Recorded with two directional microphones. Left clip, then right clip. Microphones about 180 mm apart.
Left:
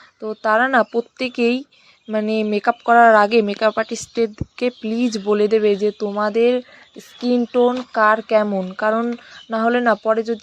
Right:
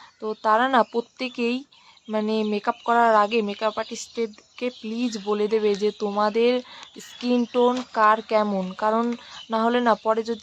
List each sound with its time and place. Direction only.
0.2 s speech: 10° left (ahead or behind)